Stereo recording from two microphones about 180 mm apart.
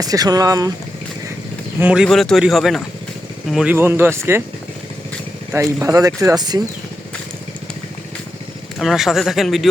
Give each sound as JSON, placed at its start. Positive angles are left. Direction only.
{"t": 0.0, "sound": "speech", "side_deg": -20}
{"t": 1.8, "sound": "speech", "side_deg": -5}
{"t": 5.8, "sound": "speech", "side_deg": -20}
{"t": 8.8, "sound": "speech", "side_deg": 0}